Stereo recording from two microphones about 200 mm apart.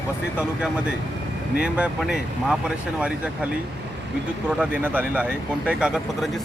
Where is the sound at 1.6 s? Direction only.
5° right (ahead or behind).